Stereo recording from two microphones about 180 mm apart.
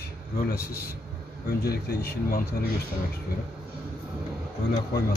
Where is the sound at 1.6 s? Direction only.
60° left (ahead or behind).